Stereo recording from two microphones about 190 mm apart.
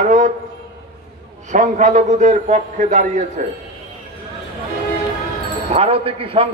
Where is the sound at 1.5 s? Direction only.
40° right (ahead or behind).